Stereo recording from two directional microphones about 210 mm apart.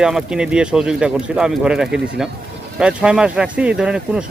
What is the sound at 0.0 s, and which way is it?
Speech, 5° right (ahead or behind).